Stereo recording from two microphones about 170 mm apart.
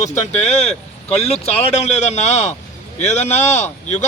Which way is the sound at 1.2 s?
40° left (ahead or behind).